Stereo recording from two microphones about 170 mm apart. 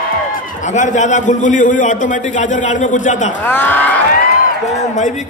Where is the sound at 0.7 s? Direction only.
45° left (ahead or behind).